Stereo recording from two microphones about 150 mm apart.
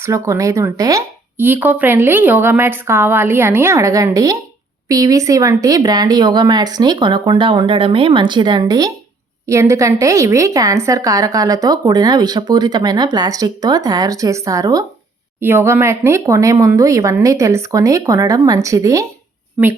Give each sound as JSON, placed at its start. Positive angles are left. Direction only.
{"t": 0.0, "sound": "speech", "side_deg": -20}